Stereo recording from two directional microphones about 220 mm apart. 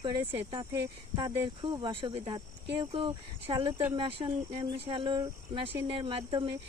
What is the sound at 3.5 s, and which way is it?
Speech, 20° right (ahead or behind).